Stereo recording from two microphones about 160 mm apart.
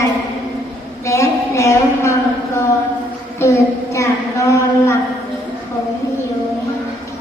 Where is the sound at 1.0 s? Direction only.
20° left (ahead or behind).